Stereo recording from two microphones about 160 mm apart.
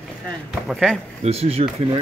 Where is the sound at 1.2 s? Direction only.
40° right (ahead or behind).